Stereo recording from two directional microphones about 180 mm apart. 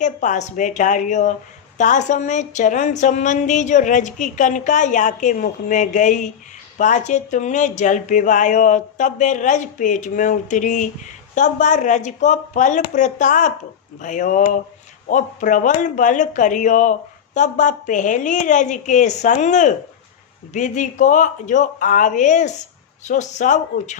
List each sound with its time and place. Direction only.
0.0 s speech: 40° left (ahead or behind)